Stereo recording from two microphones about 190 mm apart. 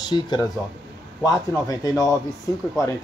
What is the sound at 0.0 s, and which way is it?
Speech, 20° left (ahead or behind).